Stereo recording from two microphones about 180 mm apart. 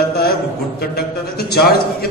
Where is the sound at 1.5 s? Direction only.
60° left (ahead or behind).